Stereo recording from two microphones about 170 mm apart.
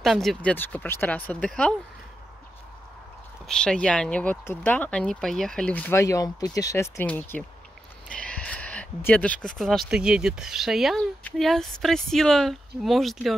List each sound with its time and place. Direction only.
0.0 s speech: centre (ahead or behind)
3.4 s speech: 5° left (ahead or behind)